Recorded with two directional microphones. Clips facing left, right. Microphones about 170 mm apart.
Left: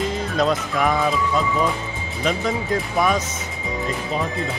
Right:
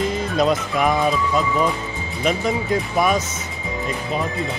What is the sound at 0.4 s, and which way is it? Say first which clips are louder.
Speech: right 1 dB; 15° right (ahead or behind).